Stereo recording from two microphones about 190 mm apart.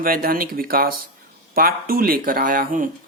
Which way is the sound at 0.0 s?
50° right (ahead or behind).